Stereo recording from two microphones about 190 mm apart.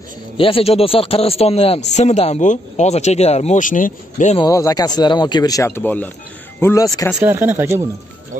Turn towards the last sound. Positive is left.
turn(degrees=-15)  # may be behind; listen again after turning